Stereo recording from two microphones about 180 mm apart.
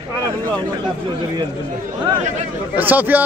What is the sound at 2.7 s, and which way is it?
Speech, 10° right (ahead or behind).